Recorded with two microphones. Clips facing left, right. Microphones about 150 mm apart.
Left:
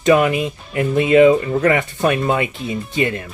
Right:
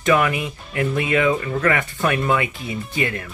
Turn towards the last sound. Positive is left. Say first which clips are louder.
# left 4 dB
turn(degrees=25)  # may be behind; listen again after turning